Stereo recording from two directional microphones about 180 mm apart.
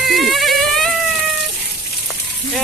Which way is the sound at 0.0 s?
Centre (ahead or behind).